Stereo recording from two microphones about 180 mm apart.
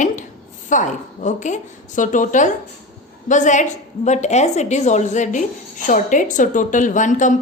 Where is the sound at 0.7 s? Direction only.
45° left (ahead or behind).